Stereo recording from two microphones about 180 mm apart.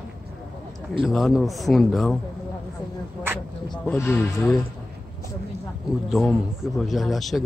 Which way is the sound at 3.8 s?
10° left (ahead or behind).